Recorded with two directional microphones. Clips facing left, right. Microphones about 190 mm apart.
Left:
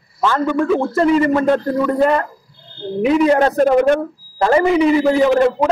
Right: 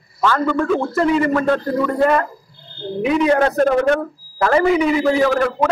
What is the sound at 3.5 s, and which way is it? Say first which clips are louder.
Speech: left 2 dB; 10° left (ahead or behind).